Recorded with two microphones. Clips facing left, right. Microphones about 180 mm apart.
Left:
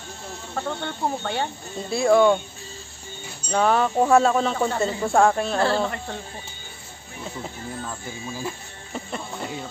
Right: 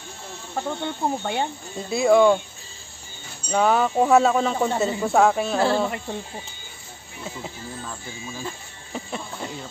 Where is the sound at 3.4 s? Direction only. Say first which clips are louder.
Even; 5° right (ahead or behind).